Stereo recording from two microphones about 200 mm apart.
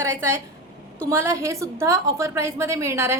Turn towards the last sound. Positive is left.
turn(degrees=-15)  # may be behind; listen again after turning